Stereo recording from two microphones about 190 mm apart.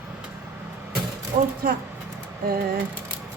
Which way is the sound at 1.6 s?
50° right (ahead or behind).